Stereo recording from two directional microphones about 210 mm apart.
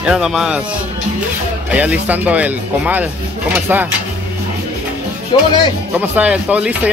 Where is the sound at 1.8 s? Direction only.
5° right (ahead or behind).